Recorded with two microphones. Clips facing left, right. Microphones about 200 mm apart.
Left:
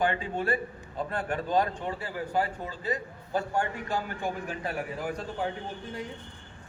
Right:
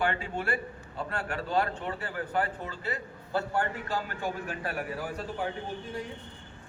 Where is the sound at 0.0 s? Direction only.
15° left (ahead or behind).